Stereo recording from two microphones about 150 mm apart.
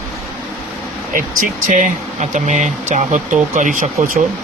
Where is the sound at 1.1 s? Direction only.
60° right (ahead or behind).